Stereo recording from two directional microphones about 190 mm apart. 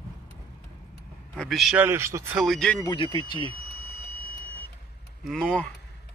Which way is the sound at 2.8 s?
25° left (ahead or behind).